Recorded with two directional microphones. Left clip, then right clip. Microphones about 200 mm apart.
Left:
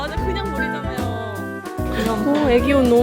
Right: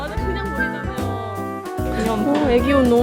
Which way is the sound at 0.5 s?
Centre (ahead or behind).